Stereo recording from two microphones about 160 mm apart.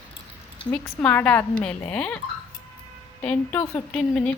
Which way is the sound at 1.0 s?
10° left (ahead or behind).